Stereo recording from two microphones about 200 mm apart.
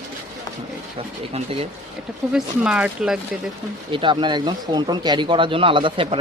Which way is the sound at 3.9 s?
25° right (ahead or behind).